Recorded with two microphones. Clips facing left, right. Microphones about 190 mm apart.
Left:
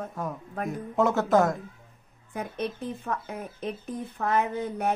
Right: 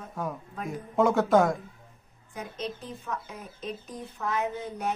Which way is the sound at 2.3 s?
55° left (ahead or behind).